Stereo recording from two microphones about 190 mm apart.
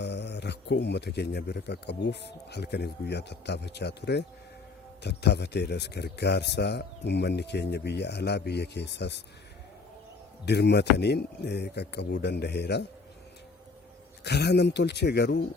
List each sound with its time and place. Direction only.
0.0 s speech: 65° left (ahead or behind)
10.4 s speech: 60° left (ahead or behind)
14.3 s speech: 60° left (ahead or behind)